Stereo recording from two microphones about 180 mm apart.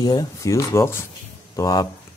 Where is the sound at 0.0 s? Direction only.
20° left (ahead or behind).